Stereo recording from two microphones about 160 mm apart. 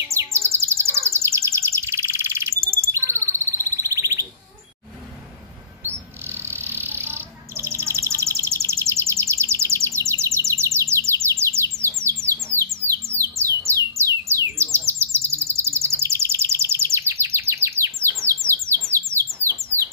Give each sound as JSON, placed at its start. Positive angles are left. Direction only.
{"t": 0.1, "sound": "bird", "side_deg": -15}
{"t": 5.9, "sound": "bird", "side_deg": -15}